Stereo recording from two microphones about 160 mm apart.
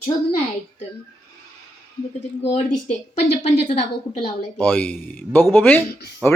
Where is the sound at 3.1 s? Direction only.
40° left (ahead or behind).